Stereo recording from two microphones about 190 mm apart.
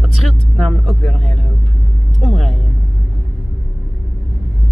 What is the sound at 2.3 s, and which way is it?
Speech, centre (ahead or behind).